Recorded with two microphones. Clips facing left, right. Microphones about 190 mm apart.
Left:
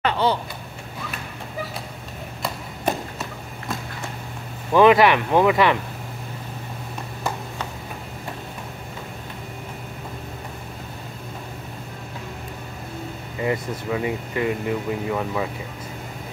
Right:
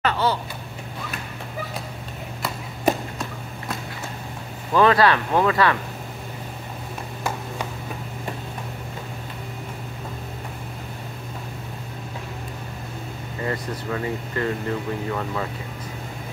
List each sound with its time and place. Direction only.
0.0 s vehicle: 15° left (ahead or behind)
4.7 s speech: 15° left (ahead or behind)
13.4 s speech: 15° left (ahead or behind)